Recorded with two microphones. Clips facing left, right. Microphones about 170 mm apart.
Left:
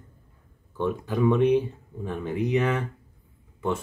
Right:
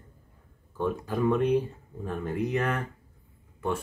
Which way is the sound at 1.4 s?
80° left.